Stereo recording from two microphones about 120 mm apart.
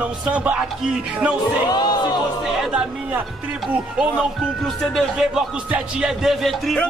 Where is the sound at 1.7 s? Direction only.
35° left (ahead or behind).